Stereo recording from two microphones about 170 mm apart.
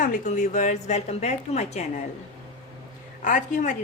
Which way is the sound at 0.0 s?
45° left (ahead or behind).